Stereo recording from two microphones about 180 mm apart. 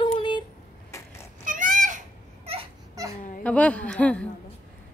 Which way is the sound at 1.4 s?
45° right (ahead or behind).